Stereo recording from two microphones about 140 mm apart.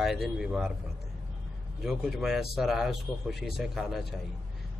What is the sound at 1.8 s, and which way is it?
Speech, 5° right (ahead or behind).